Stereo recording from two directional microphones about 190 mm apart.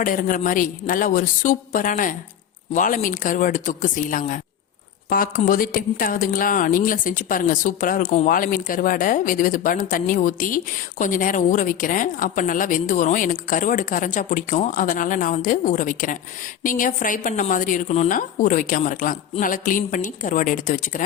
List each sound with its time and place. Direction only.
0.0 s speech: 45° left (ahead or behind)